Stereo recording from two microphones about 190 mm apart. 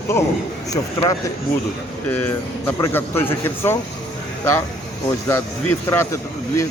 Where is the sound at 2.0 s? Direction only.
10° left (ahead or behind).